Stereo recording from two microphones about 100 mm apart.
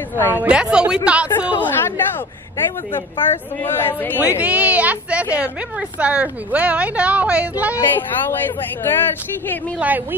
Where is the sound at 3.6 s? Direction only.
20° left (ahead or behind).